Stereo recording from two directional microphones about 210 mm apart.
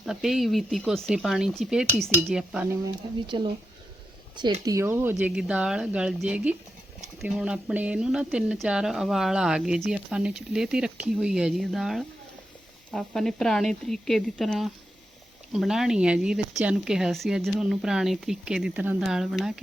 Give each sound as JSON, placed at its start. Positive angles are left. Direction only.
{"t": 0.0, "sound": "speech", "side_deg": 0}
{"t": 2.8, "sound": "speech", "side_deg": -20}